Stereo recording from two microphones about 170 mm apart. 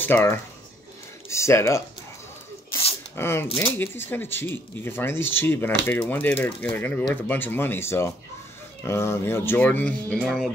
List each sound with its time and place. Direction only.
0.0 s speech: 10° left (ahead or behind)
2.7 s a sound: 35° left (ahead or behind)
3.2 s speech: 15° left (ahead or behind)
10.1 s music: centre (ahead or behind)